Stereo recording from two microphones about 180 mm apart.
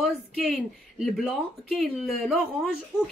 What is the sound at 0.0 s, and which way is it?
Speech, centre (ahead or behind).